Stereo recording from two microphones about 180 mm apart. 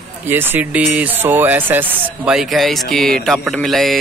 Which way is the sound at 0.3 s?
10° right (ahead or behind).